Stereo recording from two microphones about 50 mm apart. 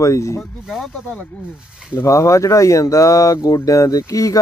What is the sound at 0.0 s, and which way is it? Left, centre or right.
Speech, left.